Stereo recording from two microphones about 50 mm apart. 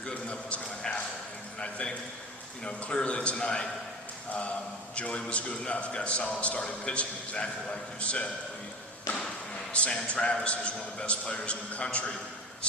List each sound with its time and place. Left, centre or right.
0.0 s a sound: left
2.6 s a man's voice: left
9.7 s a man's voice: left